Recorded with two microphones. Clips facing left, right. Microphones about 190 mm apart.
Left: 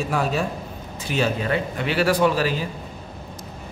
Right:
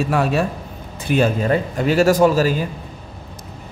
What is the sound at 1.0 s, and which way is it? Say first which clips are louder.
A man's voice: right 6 dB; 50° right (ahead or behind).